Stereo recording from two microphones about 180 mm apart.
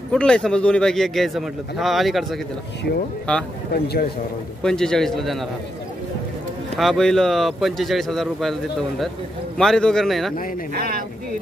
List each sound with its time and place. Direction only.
0.1 s a man's voice: 5° left (ahead or behind)
3.7 s a man's voice: 60° left (ahead or behind)
4.6 s a man's voice: 5° left (ahead or behind)
6.8 s a man's voice: centre (ahead or behind)
9.6 s a man's voice: 5° left (ahead or behind)
10.7 s speech: 55° right (ahead or behind)